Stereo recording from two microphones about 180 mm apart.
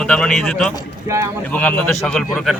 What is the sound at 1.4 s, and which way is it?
A man's voice, 10° left (ahead or behind).